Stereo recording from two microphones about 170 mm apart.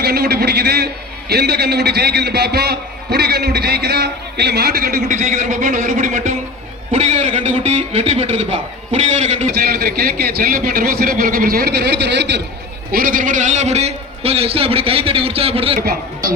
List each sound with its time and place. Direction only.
0.0 s a man's voice: 70° right (ahead or behind)
5.1 s a man's voice: 45° right (ahead or behind)
9.6 s speech: 65° right (ahead or behind); by 12.4 s 90° right
12.9 s a man's voice: 55° right (ahead or behind); by 15.8 s 35° right (ahead or behind)